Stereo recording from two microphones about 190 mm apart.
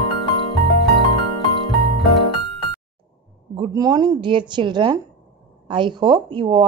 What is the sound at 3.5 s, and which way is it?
Speech, 20° right (ahead or behind).